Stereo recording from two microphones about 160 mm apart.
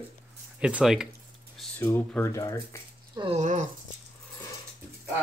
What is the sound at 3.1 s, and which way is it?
Speech, 30° right (ahead or behind).